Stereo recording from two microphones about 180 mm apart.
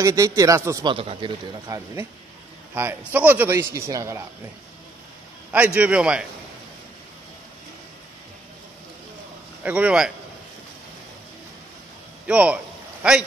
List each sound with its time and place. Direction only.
0.0 s a man's voice: 15° right (ahead or behind)
0.9 s a man's voice: 30° right (ahead or behind)
5.5 s a man's voice: 10° right (ahead or behind)
9.6 s a man's voice: 10° right (ahead or behind)
12.3 s a man's voice: 5° right (ahead or behind)